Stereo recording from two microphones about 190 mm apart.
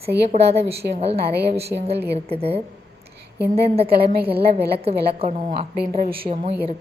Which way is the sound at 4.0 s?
55° right (ahead or behind).